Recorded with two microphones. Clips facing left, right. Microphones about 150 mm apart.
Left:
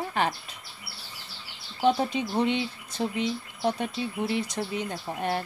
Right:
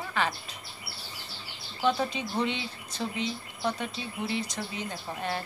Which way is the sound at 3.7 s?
55° left (ahead or behind).